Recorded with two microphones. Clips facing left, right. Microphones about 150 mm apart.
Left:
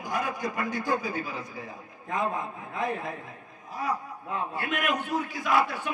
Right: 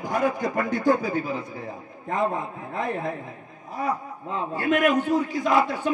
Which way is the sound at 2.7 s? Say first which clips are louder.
Right 3 dB; 55° right (ahead or behind).